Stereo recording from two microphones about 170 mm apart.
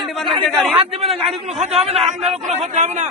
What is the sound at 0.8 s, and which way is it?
A man's voice, 35° right (ahead or behind).